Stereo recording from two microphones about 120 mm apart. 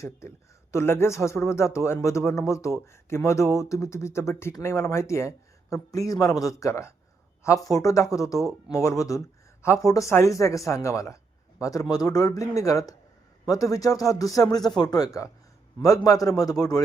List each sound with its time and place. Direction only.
0.0 s a man's voice: 20° left (ahead or behind)